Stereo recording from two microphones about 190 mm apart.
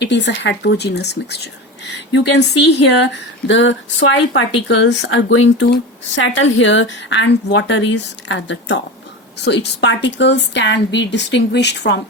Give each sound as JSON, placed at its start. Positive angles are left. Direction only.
{"t": 0.0, "sound": "speech", "side_deg": 70}